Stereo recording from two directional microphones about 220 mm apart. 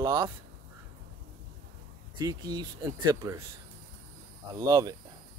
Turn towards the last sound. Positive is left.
turn(degrees=-15)  # may be behind; listen again after turning